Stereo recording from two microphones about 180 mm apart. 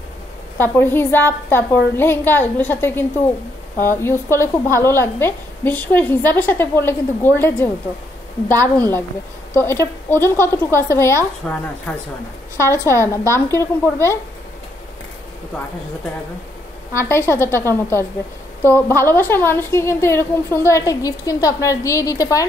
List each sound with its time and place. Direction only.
0.6 s a woman's voice: 10° left (ahead or behind)
8.7 s a woman's voice: 10° left (ahead or behind)
11.4 s a woman's voice: centre (ahead or behind)
12.5 s a woman's voice: 15° left (ahead or behind)
16.9 s a woman's voice: 15° left (ahead or behind)